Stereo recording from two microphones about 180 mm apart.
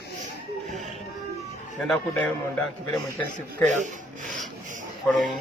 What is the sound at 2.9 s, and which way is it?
Speech, 5° left (ahead or behind).